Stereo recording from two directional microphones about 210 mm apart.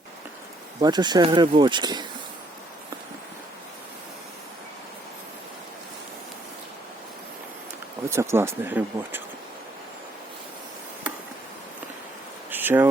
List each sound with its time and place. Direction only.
0.8 s speech: 20° right (ahead or behind)
8.1 s speech: 10° right (ahead or behind)
12.5 s a sound: 10° right (ahead or behind)